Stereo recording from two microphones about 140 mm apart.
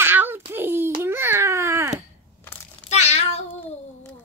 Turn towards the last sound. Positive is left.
turn(degrees=50)  # may be behind; listen again after turning